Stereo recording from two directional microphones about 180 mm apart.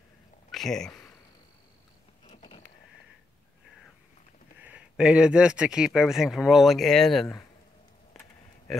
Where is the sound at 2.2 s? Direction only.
30° left (ahead or behind).